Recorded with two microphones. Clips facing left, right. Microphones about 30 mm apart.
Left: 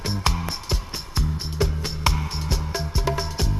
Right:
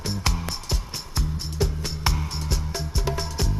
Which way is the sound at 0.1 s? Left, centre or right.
Centre.